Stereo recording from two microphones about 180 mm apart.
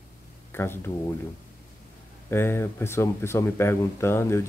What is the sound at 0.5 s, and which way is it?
Speech, 15° left (ahead or behind).